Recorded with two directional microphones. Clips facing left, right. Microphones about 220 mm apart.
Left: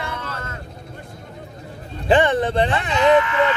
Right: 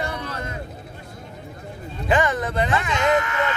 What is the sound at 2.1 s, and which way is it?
Speech, 30° left (ahead or behind).